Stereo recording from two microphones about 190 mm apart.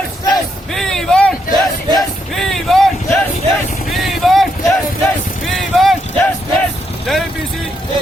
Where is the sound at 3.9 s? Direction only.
Centre (ahead or behind).